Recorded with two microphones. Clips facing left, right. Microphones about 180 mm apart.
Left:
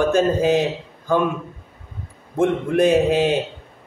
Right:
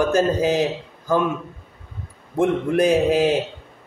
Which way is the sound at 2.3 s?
Centre (ahead or behind).